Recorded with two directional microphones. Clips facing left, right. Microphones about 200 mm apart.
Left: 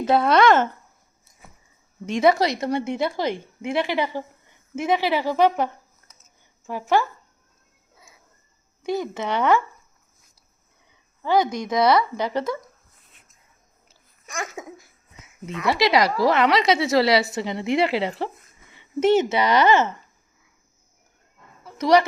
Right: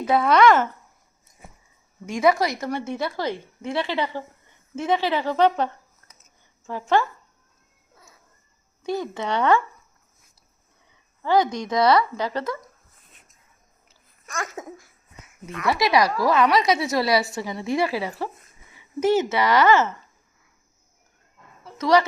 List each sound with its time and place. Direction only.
0.2 s speech: 25° left (ahead or behind)
2.0 s a woman's voice: 25° left (ahead or behind)
8.8 s speech: 20° left (ahead or behind)
11.2 s speech: 20° left (ahead or behind)
14.3 s speech: 15° left (ahead or behind)
21.8 s a woman's voice: 15° left (ahead or behind)